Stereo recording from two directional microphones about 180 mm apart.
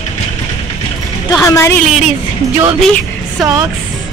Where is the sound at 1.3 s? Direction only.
15° left (ahead or behind).